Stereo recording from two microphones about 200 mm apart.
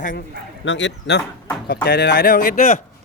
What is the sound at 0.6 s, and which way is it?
Speech, 65° left (ahead or behind).